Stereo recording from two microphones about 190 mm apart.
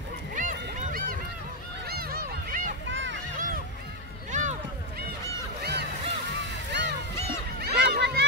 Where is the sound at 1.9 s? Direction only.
55° right (ahead or behind).